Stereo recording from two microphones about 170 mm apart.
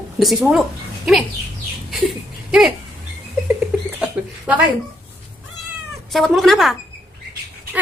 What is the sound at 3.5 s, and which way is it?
Rodents, 5° right (ahead or behind).